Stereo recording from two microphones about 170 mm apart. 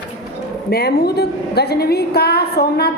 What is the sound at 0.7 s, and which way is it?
A woman's voice, 65° left (ahead or behind).